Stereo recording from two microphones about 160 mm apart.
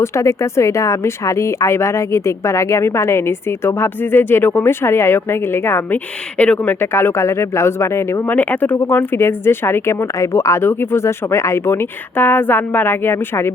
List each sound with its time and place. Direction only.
0.0 s speech: 20° left (ahead or behind)